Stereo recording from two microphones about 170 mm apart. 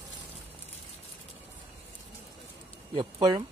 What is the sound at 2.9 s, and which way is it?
Speech, 25° right (ahead or behind).